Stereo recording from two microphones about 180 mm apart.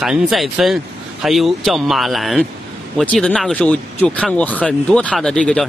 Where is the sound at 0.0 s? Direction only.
Centre (ahead or behind).